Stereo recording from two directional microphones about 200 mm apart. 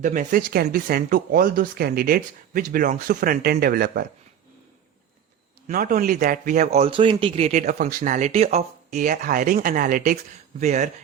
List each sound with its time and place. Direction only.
0.0 s speech: 40° right (ahead or behind)
5.6 s speech: 45° right (ahead or behind)